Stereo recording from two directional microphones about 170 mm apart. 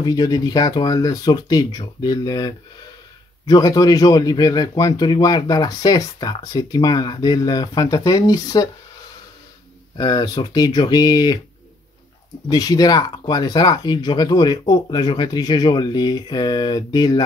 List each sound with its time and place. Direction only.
0.0 s speech: 20° left (ahead or behind)
9.9 s speech: 25° left (ahead or behind)
12.4 s speech: 20° left (ahead or behind)